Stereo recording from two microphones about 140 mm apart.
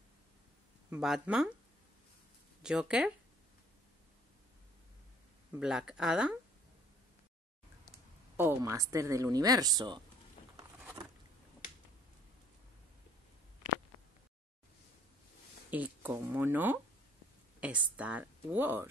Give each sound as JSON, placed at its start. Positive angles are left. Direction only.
{"t": 0.8, "sound": "speech", "side_deg": -5}
{"t": 2.6, "sound": "speech", "side_deg": -5}
{"t": 5.5, "sound": "speech", "side_deg": -5}
{"t": 8.4, "sound": "speech", "side_deg": -15}
{"t": 10.8, "sound": "a sound", "side_deg": -15}
{"t": 15.7, "sound": "speech", "side_deg": -10}